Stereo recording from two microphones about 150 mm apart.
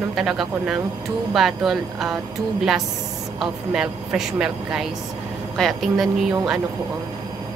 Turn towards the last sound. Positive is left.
turn(degrees=0)  # may be behind; listen again after turning